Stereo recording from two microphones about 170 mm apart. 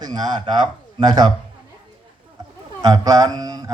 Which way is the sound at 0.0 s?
25° right (ahead or behind).